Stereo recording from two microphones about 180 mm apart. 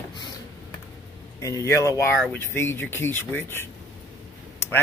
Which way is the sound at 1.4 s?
15° left (ahead or behind).